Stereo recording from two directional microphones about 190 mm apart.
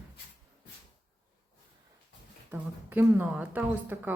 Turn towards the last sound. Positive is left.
turn(degrees=-10)  # may be behind; listen again after turning